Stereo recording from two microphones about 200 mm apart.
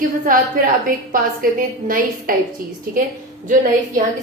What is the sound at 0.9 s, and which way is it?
A woman's voice, 45° right (ahead or behind).